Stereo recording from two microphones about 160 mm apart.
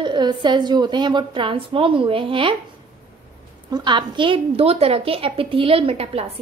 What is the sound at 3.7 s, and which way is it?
A woman's voice, 30° right (ahead or behind).